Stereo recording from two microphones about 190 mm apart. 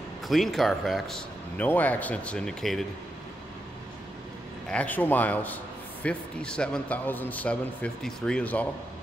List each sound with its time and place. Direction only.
0.3 s speech: centre (ahead or behind)
4.6 s a man's voice: 5° left (ahead or behind)